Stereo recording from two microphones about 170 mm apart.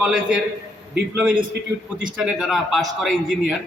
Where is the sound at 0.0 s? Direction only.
5° right (ahead or behind).